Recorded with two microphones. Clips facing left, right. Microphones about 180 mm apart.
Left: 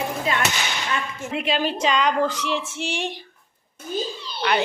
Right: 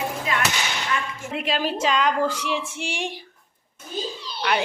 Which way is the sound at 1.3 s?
Centre (ahead or behind).